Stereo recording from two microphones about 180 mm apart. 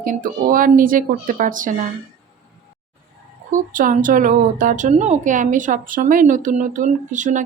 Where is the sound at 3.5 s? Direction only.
50° right (ahead or behind).